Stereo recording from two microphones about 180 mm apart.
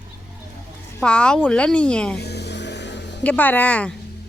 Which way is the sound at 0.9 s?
5° left (ahead or behind).